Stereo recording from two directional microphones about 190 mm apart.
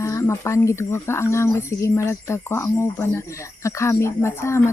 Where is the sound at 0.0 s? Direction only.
15° left (ahead or behind).